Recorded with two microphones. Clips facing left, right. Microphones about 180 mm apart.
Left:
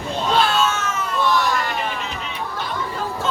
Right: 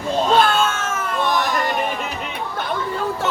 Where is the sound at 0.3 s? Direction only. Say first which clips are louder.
Right 1 dB; 50° right (ahead or behind).